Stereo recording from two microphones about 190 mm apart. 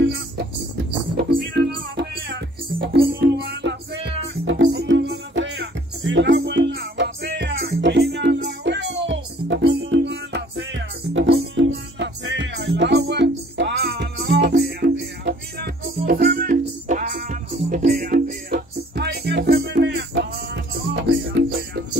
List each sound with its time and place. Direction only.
0.0 s music: 65° right (ahead or behind)